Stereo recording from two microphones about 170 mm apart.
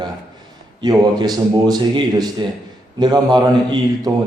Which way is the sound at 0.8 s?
25° right (ahead or behind).